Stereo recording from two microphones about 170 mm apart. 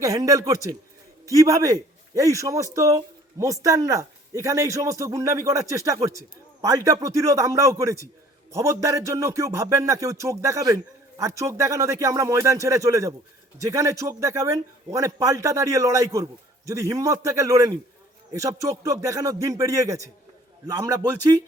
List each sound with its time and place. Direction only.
0.0 s a man's voice: 20° right (ahead or behind)
8.5 s music: 20° right (ahead or behind)
13.6 s a man's voice: 20° right (ahead or behind)